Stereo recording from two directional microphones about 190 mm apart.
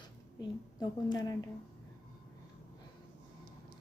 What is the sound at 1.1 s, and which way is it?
Speech, 20° left (ahead or behind).